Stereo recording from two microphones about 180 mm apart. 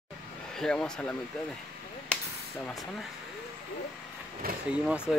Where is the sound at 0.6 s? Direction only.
5° left (ahead or behind).